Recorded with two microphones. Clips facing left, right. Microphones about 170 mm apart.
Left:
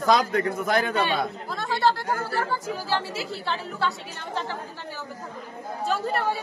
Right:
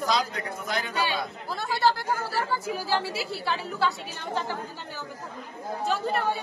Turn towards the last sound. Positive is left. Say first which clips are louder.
# left 1 dB
turn(degrees=0)  # may be behind; listen again after turning